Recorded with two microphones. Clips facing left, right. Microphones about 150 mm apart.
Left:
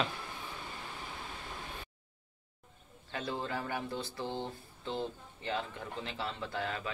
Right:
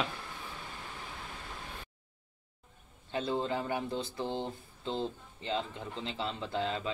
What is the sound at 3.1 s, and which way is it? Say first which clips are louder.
Speech: right 5 dB; 20° right (ahead or behind).